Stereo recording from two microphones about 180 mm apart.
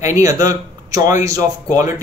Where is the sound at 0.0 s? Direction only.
15° right (ahead or behind).